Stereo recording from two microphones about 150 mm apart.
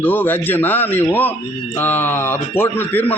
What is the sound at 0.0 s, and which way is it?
A man's voice, 15° left (ahead or behind).